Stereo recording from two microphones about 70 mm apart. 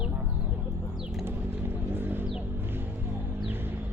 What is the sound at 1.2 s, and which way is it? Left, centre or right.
Vehicle, right.